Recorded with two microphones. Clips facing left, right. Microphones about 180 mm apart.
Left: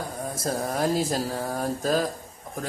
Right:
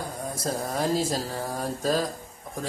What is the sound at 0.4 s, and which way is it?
A man's voice, centre (ahead or behind).